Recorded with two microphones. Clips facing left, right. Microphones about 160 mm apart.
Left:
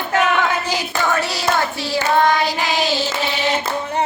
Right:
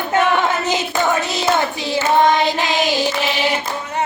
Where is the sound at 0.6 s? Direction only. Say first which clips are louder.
Right 3 dB; 20° right (ahead or behind).